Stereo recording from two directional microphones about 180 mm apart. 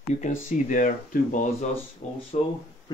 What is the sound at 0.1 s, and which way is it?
Speech, 45° left (ahead or behind).